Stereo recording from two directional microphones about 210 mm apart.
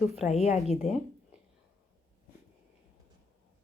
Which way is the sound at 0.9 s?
30° left (ahead or behind).